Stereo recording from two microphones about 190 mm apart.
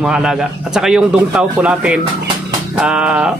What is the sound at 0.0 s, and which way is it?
Speech, 5° right (ahead or behind).